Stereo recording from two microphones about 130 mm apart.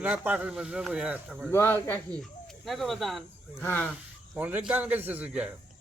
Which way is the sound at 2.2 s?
Centre (ahead or behind).